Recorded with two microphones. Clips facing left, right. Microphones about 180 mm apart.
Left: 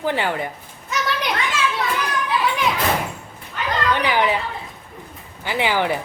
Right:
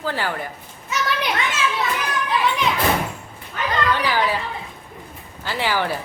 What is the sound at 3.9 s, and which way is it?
Speech, 20° left (ahead or behind).